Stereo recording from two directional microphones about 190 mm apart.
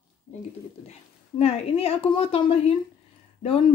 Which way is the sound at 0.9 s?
30° left (ahead or behind).